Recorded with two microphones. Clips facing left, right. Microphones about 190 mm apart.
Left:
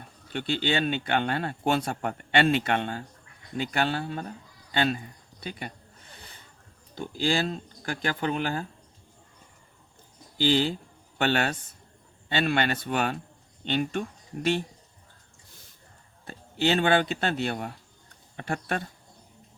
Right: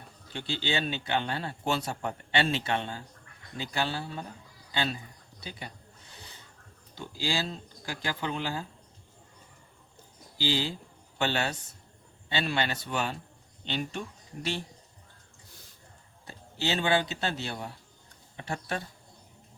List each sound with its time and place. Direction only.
0.3 s speech: 55° left (ahead or behind)
6.9 s speech: 55° left (ahead or behind)
10.4 s speech: 55° left (ahead or behind)
16.2 s speech: 55° left (ahead or behind)